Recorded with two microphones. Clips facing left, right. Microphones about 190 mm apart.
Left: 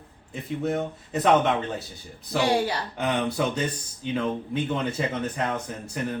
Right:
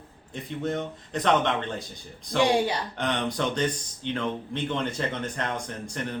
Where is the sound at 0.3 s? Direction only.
5° left (ahead or behind).